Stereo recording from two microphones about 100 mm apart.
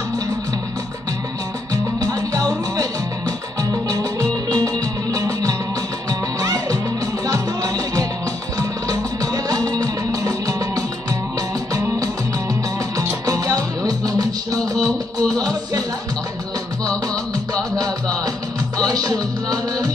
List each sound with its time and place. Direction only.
2.0 s music: 40° right (ahead or behind)
12.0 s music: 35° right (ahead or behind)
16.9 s music: 10° left (ahead or behind)
17.7 s music: 40° right (ahead or behind)